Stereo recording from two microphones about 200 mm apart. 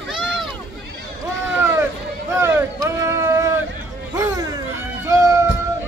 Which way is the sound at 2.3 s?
15° right (ahead or behind).